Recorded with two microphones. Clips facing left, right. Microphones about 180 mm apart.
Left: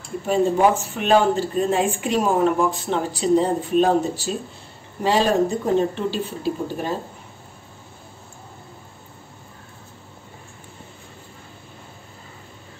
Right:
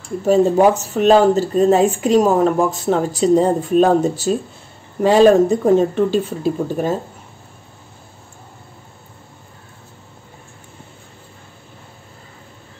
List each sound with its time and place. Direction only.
0.2 s speech: 40° right (ahead or behind)